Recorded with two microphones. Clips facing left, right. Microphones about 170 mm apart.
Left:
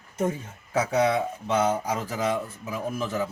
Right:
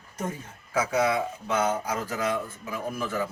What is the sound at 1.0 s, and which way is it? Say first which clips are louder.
Speech: left 2 dB; 20° left (ahead or behind).